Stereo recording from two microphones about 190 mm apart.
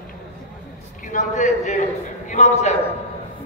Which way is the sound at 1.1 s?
40° left (ahead or behind).